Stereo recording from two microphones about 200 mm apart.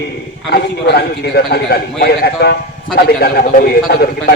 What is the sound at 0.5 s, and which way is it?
A man's voice, 55° left (ahead or behind).